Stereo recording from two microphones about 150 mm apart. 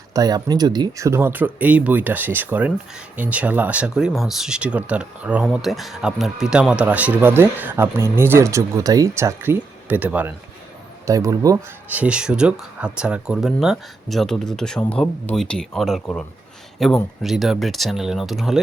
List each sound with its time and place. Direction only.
0.1 s speech: 25° right (ahead or behind); by 10.3 s 10° right (ahead or behind)
11.0 s speech: 20° right (ahead or behind)
11.9 s speech: 10° right (ahead or behind)